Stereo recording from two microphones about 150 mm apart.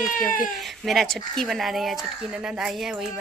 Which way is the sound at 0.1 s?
65° left (ahead or behind).